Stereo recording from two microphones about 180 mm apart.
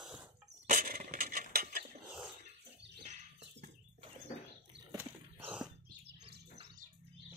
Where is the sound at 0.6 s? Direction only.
50° right (ahead or behind).